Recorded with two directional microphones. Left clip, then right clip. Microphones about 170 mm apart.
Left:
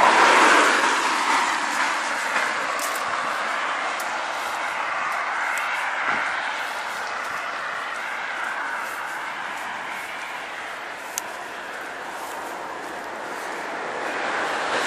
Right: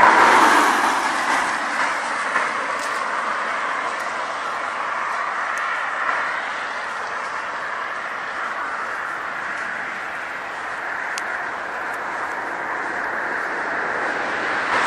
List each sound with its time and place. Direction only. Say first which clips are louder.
0.0 s vehicle: right 3 dB; 20° right (ahead or behind)